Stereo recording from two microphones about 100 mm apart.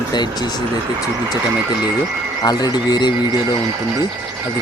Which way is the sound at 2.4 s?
40° left (ahead or behind).